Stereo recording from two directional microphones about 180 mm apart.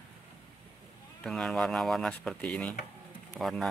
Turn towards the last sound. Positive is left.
turn(degrees=0)  # may be behind; listen again after turning